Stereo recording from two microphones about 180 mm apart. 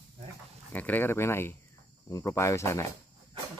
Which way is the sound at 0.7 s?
10° left (ahead or behind).